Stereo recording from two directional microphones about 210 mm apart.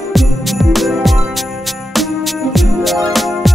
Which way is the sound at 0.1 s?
Centre (ahead or behind).